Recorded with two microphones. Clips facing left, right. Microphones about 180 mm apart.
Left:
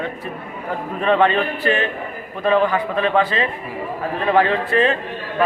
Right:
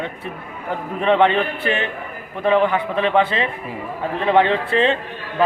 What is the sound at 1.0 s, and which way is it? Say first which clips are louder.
A man's voice: right 1 dB; 20° right (ahead or behind).